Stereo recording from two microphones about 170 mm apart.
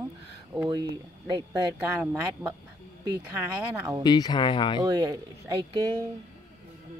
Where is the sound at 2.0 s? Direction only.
15° right (ahead or behind).